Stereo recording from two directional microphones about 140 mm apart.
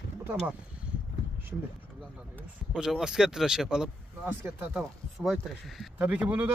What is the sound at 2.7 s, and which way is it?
Speech, 5° right (ahead or behind).